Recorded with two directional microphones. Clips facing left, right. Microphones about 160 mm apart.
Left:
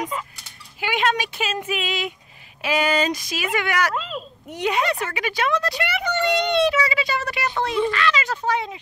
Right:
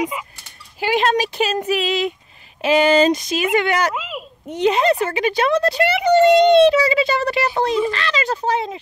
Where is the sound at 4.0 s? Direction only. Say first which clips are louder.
Even; 5° right (ahead or behind).